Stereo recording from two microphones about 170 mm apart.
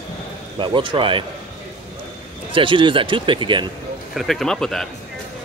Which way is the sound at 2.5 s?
30° right (ahead or behind).